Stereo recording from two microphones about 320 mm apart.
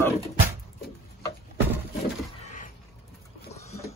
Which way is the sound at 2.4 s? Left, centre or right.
Left.